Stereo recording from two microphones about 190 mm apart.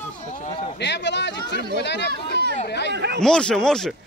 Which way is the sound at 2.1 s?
60° right (ahead or behind).